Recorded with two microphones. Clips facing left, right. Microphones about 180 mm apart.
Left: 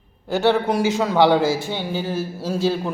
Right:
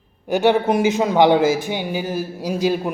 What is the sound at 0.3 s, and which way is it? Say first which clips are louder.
A man's voice: right 2 dB; 15° right (ahead or behind).